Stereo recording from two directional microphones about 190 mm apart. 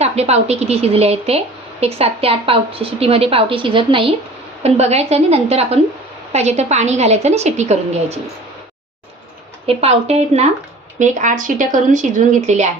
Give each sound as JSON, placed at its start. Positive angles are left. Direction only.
{"t": 0.0, "sound": "a woman's voice", "side_deg": -35}
{"t": 9.6, "sound": "a woman's voice", "side_deg": -35}